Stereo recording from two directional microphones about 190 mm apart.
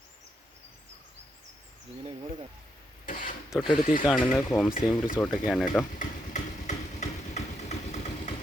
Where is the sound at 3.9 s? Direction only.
5° right (ahead or behind).